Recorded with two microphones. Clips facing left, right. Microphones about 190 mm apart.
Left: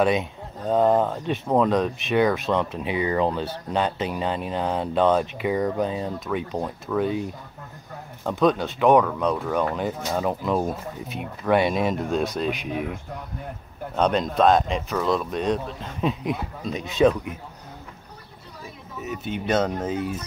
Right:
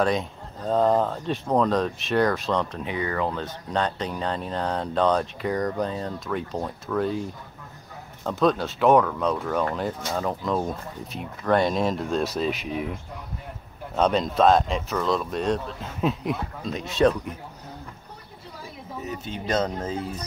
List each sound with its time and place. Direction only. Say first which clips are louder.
0.0 s speech: left 2 dB; 5° left (ahead or behind)
3.4 s speech: left 2 dB; 10° left (ahead or behind)
19.2 s speech: left 3 dB; 15° left (ahead or behind)